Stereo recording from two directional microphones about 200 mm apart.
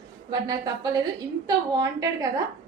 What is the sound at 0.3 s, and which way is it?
A woman's voice, 20° right (ahead or behind).